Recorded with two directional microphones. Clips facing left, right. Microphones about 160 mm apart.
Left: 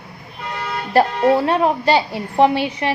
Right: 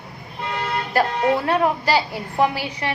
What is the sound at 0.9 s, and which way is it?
A woman's voice, 30° left (ahead or behind).